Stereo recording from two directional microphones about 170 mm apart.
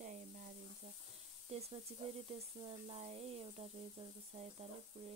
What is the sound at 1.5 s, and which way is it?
Speech, 40° right (ahead or behind).